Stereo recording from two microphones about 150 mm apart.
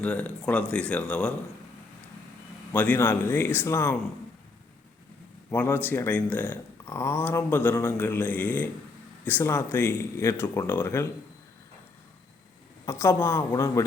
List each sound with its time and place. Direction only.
0.0 s speech: 10° left (ahead or behind)
2.7 s speech: 10° left (ahead or behind)
5.5 s speech: 15° left (ahead or behind)
12.8 s a woman's voice: 20° left (ahead or behind)